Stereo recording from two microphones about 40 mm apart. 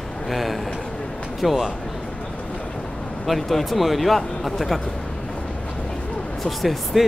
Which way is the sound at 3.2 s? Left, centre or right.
Centre.